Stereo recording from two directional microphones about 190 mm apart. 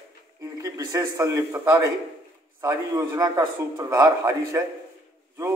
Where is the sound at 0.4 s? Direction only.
15° right (ahead or behind).